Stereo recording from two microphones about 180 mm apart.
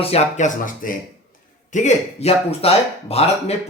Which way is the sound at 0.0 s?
35° left (ahead or behind).